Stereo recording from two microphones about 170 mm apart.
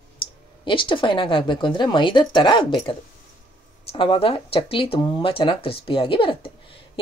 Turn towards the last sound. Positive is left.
turn(degrees=30)  # may be behind; listen again after turning